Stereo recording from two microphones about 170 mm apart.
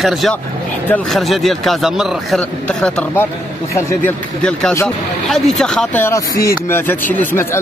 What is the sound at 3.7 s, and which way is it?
Speech, 15° left (ahead or behind).